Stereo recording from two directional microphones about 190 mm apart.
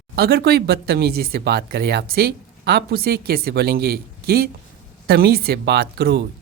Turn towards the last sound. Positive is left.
turn(degrees=-60)  # may be behind; listen again after turning